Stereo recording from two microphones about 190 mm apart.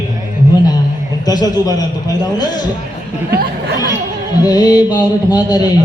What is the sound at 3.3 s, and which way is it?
Speech, 55° right (ahead or behind).